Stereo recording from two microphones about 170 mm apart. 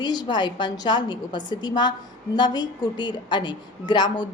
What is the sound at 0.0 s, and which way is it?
A woman's voice, 25° left (ahead or behind).